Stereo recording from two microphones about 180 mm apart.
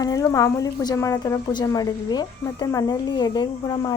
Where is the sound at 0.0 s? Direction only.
20° left (ahead or behind).